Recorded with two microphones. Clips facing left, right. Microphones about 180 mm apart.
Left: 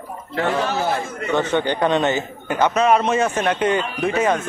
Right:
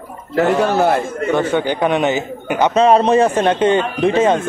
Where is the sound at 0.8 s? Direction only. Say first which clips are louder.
Right 7 dB; 60° right (ahead or behind).